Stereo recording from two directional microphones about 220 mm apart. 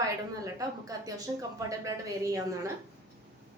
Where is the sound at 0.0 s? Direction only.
15° right (ahead or behind).